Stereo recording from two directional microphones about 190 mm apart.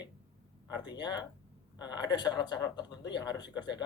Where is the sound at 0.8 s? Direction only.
20° left (ahead or behind).